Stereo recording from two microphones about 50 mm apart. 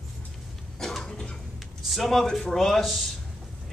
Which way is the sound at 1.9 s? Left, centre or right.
Centre.